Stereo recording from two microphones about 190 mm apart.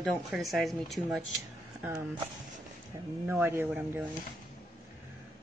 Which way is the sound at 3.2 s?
10° right (ahead or behind).